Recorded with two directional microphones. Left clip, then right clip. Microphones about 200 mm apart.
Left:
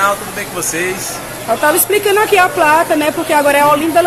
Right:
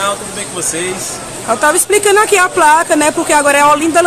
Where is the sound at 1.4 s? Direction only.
15° right (ahead or behind).